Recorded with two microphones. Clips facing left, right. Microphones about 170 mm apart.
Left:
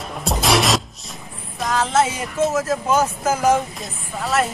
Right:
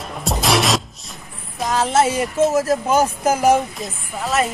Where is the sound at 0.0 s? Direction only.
Centre (ahead or behind).